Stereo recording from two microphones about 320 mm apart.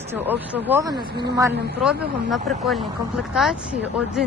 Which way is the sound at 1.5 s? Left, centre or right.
Right.